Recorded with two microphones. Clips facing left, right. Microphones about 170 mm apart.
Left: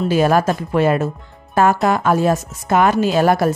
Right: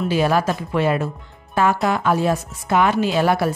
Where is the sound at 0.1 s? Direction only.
45° left (ahead or behind).